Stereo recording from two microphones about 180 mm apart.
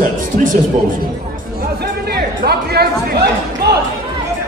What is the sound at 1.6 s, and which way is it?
Chatter, 60° right (ahead or behind).